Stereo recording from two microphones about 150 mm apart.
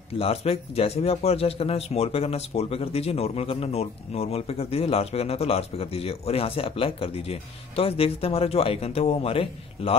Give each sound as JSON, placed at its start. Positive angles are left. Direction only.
{"t": 0.1, "sound": "speech", "side_deg": 40}